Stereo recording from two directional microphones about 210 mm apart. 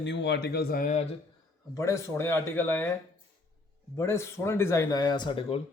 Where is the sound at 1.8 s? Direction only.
15° left (ahead or behind).